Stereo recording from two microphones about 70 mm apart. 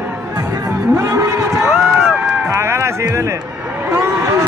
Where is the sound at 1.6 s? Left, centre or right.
Centre.